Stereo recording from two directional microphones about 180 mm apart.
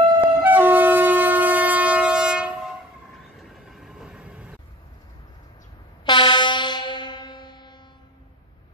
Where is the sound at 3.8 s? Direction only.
5° right (ahead or behind).